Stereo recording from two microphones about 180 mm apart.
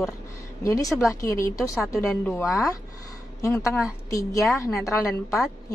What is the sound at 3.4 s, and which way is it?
A woman's voice, 15° left (ahead or behind).